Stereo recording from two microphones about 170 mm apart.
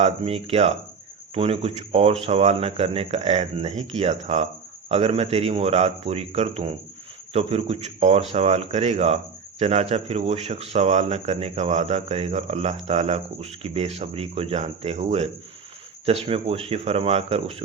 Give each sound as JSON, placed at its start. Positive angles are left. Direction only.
{"t": 0.0, "sound": "speech", "side_deg": -35}